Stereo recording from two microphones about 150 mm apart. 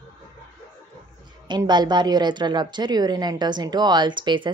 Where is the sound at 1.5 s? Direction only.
30° right (ahead or behind).